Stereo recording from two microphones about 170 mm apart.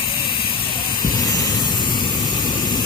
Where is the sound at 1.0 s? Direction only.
20° left (ahead or behind).